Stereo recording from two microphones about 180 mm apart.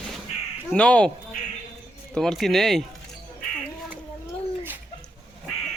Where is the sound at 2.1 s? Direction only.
Centre (ahead or behind).